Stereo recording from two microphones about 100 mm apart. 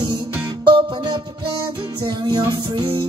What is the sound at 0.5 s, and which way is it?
Music, 50° right (ahead or behind).